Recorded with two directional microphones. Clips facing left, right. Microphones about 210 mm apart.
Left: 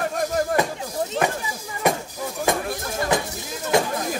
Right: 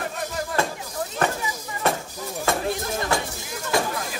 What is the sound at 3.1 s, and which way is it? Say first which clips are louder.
Music: left 3 dB; 20° left (ahead or behind).